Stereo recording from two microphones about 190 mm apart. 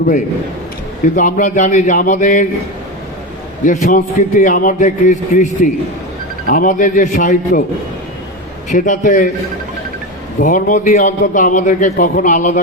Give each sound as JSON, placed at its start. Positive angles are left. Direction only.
{"t": 1.1, "sound": "a man's voice", "side_deg": 40}
{"t": 3.6, "sound": "a man's voice", "side_deg": 40}
{"t": 6.5, "sound": "a man's voice", "side_deg": 45}
{"t": 8.7, "sound": "a man's voice", "side_deg": 40}
{"t": 10.4, "sound": "a man's voice", "side_deg": 45}